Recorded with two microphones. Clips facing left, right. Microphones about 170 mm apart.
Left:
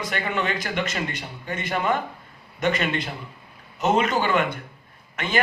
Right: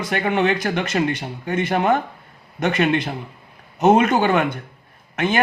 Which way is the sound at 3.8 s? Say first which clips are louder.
Right 6 dB; 55° right (ahead or behind).